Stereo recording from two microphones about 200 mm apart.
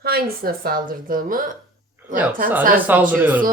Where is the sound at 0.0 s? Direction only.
50° right (ahead or behind).